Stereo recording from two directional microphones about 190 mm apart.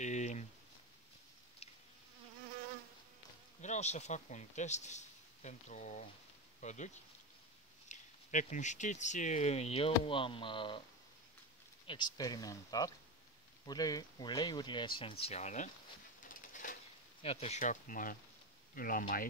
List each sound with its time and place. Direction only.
0.0 s a sound: 35° left (ahead or behind)
1.6 s insect: 30° left (ahead or behind)
3.6 s speech: 35° left (ahead or behind)
11.9 s speech: 20° left (ahead or behind); by 15.7 s 40° left (ahead or behind)
16.3 s a sound: 45° left (ahead or behind)
17.2 s speech: 30° left (ahead or behind); by 19.2 s 50° left (ahead or behind)